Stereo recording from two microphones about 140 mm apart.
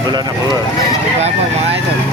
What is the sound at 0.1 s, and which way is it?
Speech, 30° right (ahead or behind).